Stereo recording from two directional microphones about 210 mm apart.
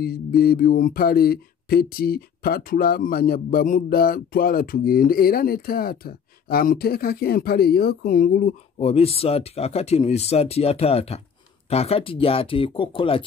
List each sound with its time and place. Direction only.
0.4 s speech: 45° left (ahead or behind)
8.7 s speech: 30° left (ahead or behind)